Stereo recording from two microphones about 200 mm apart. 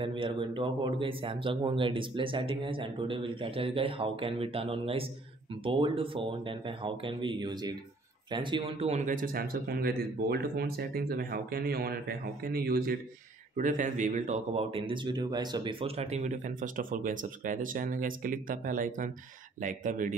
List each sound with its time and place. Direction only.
0.0 s a man's voice: 25° right (ahead or behind)